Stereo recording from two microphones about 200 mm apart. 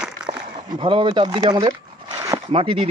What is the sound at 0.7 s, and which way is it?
Speech, 25° right (ahead or behind).